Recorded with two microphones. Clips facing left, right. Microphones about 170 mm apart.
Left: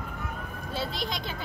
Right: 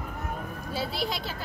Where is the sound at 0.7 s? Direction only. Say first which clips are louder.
Right 2 dB; 5° right (ahead or behind).